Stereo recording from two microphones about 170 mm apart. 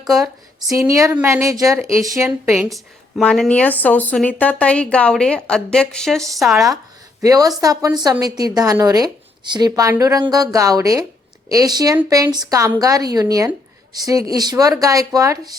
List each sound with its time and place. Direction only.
0.7 s a woman's voice: 20° right (ahead or behind)
2.5 s a woman's voice: centre (ahead or behind)
7.2 s a woman's voice: 20° right (ahead or behind)